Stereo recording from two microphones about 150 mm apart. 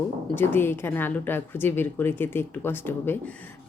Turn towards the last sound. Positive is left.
turn(degrees=15)  # may be behind; listen again after turning